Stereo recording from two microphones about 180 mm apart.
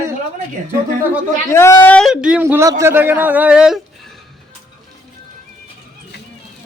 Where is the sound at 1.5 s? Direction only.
15° left (ahead or behind); by 3.8 s 5° right (ahead or behind).